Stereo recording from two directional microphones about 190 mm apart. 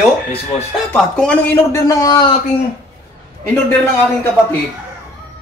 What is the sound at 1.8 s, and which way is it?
Speech, 20° left (ahead or behind).